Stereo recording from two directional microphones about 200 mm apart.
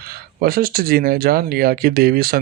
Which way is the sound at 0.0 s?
50° right (ahead or behind).